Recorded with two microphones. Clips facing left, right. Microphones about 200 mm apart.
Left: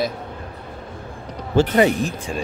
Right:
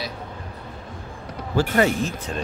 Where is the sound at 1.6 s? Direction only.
15° left (ahead or behind).